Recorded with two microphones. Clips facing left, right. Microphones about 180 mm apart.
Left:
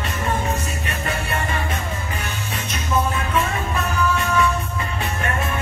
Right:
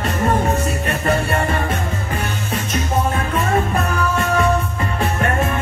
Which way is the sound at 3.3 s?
45° right (ahead or behind).